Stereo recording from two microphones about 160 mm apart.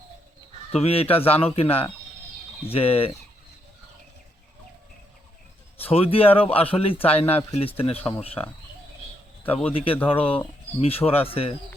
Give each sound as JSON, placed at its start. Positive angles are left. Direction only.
{"t": 0.7, "sound": "speech", "side_deg": 40}
{"t": 5.7, "sound": "speech", "side_deg": 40}
{"t": 8.4, "sound": "speech", "side_deg": 20}
{"t": 9.7, "sound": "speech", "side_deg": 35}